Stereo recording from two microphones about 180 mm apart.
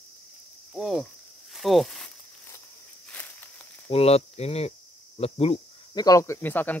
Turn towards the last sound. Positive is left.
turn(degrees=10)  # may be behind; listen again after turning